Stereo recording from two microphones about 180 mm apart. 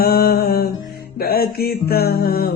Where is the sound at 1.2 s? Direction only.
55° left (ahead or behind).